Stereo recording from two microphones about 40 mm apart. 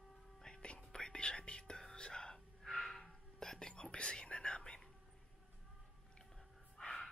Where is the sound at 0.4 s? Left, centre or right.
Left.